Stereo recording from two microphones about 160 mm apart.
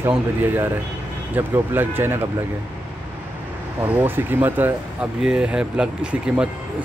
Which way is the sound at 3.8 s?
15° right (ahead or behind).